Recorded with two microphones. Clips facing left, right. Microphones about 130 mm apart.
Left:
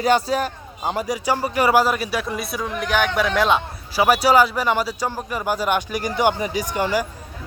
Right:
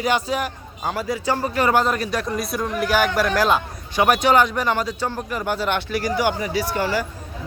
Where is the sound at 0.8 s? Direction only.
20° left (ahead or behind).